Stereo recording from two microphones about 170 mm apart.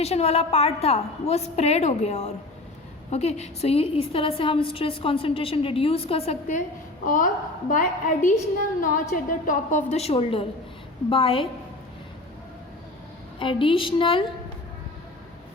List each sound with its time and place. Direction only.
0.0 s a woman's voice: 40° left (ahead or behind)
7.0 s a woman's voice: 55° left (ahead or behind); by 11.4 s 30° left (ahead or behind)
13.4 s a woman's voice: 30° left (ahead or behind)